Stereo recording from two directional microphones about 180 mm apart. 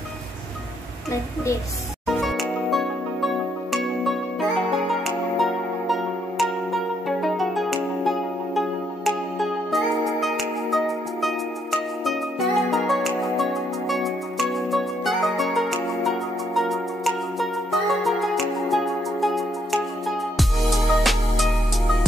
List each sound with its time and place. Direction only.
2.0 s music: centre (ahead or behind)